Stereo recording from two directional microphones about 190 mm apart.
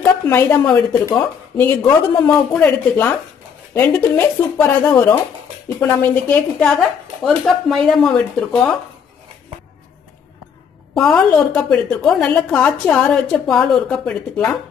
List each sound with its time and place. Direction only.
0.0 s a woman's voice: 10° left (ahead or behind)
1.9 s speech: 20° left (ahead or behind)
2.5 s a woman's voice: 10° left (ahead or behind)
11.0 s a woman's voice: 5° left (ahead or behind)